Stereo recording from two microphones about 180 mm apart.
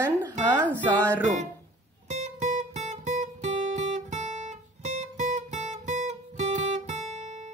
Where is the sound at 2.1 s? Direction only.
40° right (ahead or behind).